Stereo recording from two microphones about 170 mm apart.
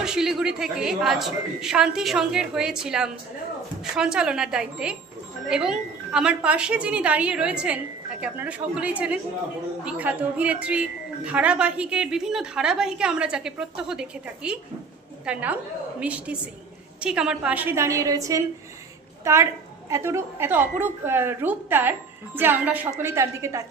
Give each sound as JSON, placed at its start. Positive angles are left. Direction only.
{"t": 0.0, "sound": "a woman's voice", "side_deg": -5}